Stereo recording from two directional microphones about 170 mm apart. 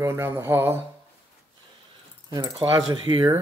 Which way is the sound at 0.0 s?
15° right (ahead or behind).